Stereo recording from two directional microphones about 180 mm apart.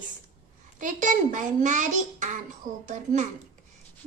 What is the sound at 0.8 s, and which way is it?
A child's voice, 45° right (ahead or behind).